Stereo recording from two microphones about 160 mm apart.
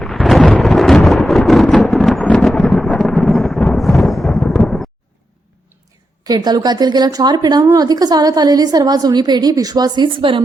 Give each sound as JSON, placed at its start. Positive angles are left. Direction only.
{"t": 0.0, "sound": "thunder", "side_deg": 0}
{"t": 6.2, "sound": "speech", "side_deg": -25}